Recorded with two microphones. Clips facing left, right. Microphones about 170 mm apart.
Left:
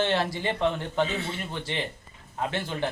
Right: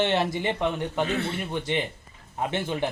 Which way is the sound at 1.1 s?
65° right (ahead or behind).